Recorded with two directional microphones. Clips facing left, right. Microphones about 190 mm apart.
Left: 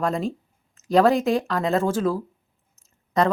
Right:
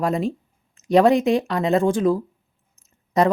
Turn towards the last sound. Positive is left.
turn(degrees=-5)  # may be behind; listen again after turning